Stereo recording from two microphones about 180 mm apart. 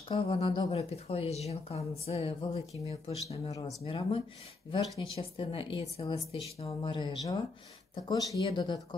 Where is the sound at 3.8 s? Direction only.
30° left (ahead or behind).